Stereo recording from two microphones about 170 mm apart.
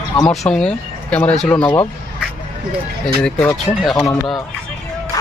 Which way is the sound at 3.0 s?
5° left (ahead or behind).